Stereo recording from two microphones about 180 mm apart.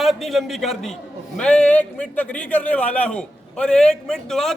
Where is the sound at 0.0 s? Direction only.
Centre (ahead or behind).